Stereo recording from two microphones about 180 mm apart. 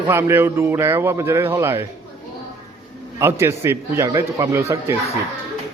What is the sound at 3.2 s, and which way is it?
A man's voice, 15° right (ahead or behind).